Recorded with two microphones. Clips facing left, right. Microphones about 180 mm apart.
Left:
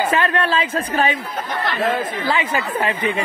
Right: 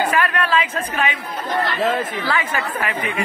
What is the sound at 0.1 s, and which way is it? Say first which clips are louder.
A woman's voice: left 1 dB; 25° left (ahead or behind).